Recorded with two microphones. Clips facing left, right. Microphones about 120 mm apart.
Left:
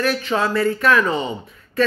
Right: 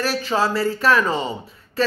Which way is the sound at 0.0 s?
30° right (ahead or behind).